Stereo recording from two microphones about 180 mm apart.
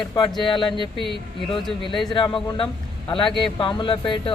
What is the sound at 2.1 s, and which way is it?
A man's voice, 25° left (ahead or behind).